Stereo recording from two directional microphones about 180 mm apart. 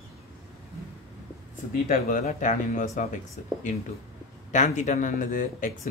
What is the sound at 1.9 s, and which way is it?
Speech, 45° left (ahead or behind).